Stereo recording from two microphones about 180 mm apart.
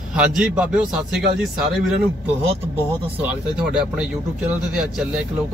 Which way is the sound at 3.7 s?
5° right (ahead or behind).